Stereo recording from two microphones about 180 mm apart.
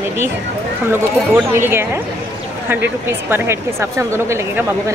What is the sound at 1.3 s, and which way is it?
Speech, 10° right (ahead or behind).